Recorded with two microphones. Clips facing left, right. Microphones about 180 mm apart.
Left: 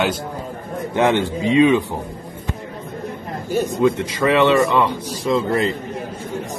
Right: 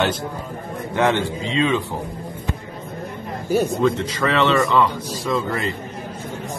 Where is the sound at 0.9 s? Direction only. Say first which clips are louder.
Left 2 dB; 15° left (ahead or behind).